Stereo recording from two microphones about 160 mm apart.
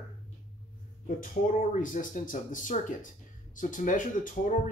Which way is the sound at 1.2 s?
55° left (ahead or behind).